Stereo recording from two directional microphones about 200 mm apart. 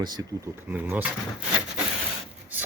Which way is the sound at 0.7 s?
10° right (ahead or behind).